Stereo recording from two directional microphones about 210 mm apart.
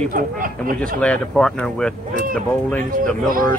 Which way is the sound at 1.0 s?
5° left (ahead or behind).